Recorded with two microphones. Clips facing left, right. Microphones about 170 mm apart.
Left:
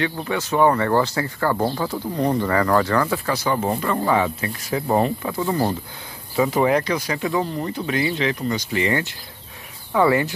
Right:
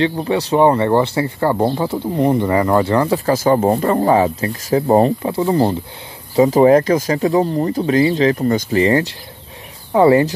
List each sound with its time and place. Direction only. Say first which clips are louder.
0.0 s speech: right 7 dB; 30° right (ahead or behind)
3.3 s speech: right 8 dB; 45° right (ahead or behind)